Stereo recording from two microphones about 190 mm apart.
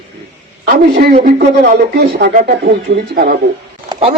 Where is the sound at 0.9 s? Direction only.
50° right (ahead or behind).